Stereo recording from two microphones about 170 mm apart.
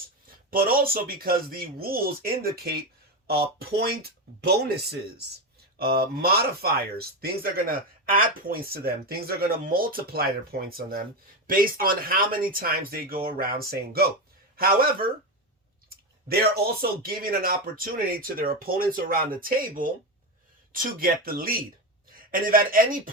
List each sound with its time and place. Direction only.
0.5 s speech: 60° right (ahead or behind)
17.1 s speech: 60° right (ahead or behind)